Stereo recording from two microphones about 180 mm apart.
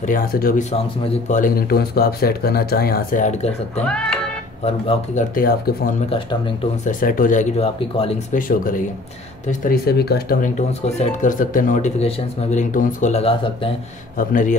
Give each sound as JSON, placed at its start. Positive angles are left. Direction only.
{"t": 0.0, "sound": "speech", "side_deg": 50}
{"t": 3.8, "sound": "speech", "side_deg": 5}
{"t": 4.6, "sound": "speech", "side_deg": 35}
{"t": 5.3, "sound": "speech", "side_deg": 50}
{"t": 6.0, "sound": "speech", "side_deg": 30}
{"t": 6.9, "sound": "speech", "side_deg": 50}
{"t": 8.4, "sound": "speech", "side_deg": 50}
{"t": 10.5, "sound": "speech", "side_deg": 40}
{"t": 14.1, "sound": "speech", "side_deg": 45}